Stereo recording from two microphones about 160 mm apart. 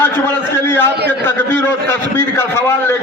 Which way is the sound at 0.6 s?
15° left (ahead or behind).